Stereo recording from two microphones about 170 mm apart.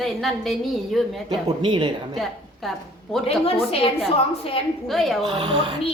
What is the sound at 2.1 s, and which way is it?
Speech, centre (ahead or behind).